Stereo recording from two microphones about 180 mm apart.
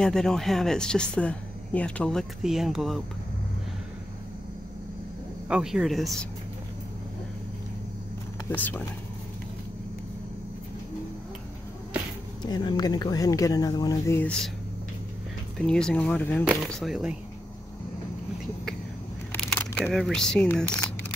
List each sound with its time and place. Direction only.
0.0 s speech: 5° left (ahead or behind)
5.5 s speech: 5° right (ahead or behind)
8.5 s speech: 10° left (ahead or behind)
12.4 s speech: 25° left (ahead or behind)
15.5 s speech: 5° left (ahead or behind)
19.3 s speech: 10° left (ahead or behind)